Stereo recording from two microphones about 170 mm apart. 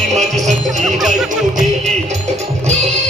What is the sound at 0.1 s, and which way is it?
Music, 45° right (ahead or behind).